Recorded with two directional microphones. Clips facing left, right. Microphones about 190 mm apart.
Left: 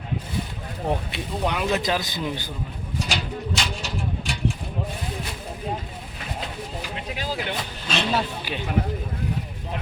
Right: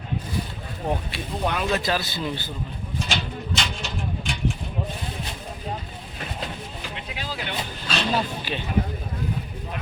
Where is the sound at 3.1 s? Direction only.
10° left (ahead or behind).